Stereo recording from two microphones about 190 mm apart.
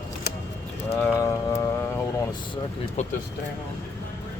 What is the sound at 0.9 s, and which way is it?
Speech, 10° left (ahead or behind).